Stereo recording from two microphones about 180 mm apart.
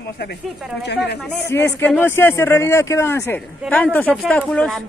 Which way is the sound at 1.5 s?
10° left (ahead or behind).